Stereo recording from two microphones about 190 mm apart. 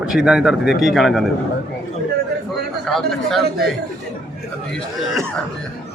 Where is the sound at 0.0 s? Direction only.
5° right (ahead or behind).